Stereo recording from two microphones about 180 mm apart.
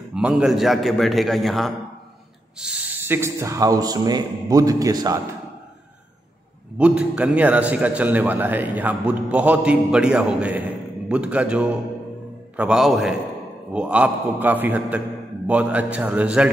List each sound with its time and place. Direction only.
0.1 s a man's voice: 5° right (ahead or behind)
6.8 s a man's voice: 5° right (ahead or behind)